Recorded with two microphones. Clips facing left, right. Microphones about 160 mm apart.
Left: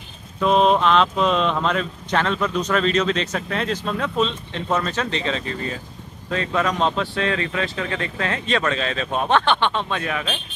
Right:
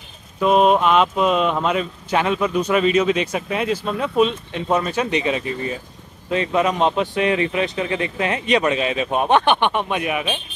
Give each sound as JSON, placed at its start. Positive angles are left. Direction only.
{"t": 0.4, "sound": "speech", "side_deg": -5}